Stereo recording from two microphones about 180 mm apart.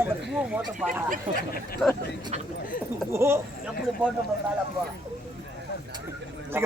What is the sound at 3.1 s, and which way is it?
Speech, 15° right (ahead or behind).